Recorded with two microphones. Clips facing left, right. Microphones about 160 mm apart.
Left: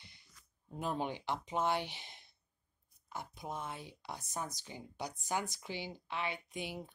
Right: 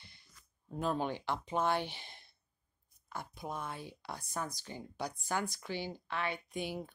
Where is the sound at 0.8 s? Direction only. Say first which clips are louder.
Right 3 dB; 15° left (ahead or behind).